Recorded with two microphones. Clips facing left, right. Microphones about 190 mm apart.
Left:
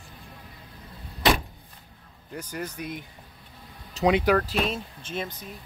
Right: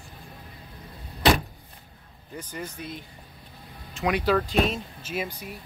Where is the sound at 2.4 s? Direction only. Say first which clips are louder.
Left 2 dB; 10° left (ahead or behind).